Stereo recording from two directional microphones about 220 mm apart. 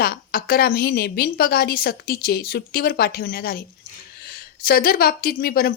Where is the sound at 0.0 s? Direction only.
45° left (ahead or behind).